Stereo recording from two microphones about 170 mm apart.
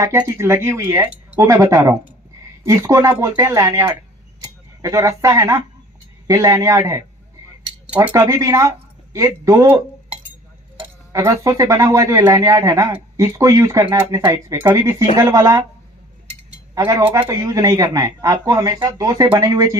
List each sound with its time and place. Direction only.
0.0 s speech: 15° right (ahead or behind)
11.1 s speech: 20° right (ahead or behind)
16.7 s speech: 20° right (ahead or behind)
17.0 s speech: 10° right (ahead or behind)
17.2 s speech: 20° right (ahead or behind)